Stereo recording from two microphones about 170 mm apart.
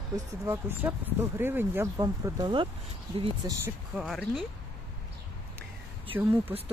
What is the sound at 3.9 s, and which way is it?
Speech, centre (ahead or behind).